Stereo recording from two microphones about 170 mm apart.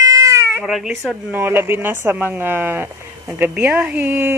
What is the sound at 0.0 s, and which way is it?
Baby cry, 20° right (ahead or behind).